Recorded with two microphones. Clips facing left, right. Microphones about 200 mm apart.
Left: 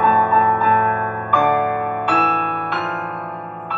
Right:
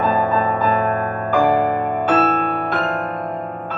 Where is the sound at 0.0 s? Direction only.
40° right (ahead or behind).